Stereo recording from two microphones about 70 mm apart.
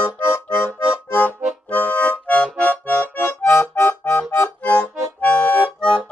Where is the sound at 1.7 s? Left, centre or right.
Left.